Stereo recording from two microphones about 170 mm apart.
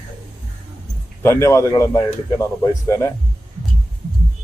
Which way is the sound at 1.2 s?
15° left (ahead or behind).